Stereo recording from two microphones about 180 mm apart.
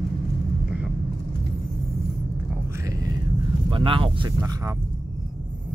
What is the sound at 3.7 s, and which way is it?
Speech, 30° right (ahead or behind).